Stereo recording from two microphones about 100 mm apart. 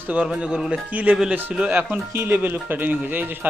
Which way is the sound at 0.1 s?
10° right (ahead or behind).